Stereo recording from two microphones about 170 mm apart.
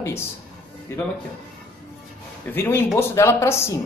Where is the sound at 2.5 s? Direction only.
15° left (ahead or behind).